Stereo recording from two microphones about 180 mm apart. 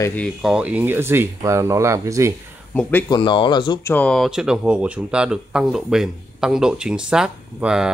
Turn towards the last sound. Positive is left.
turn(degrees=-5)  # may be behind; listen again after turning